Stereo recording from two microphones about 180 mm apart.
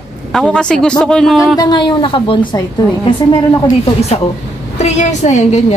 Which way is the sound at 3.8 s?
35° left (ahead or behind).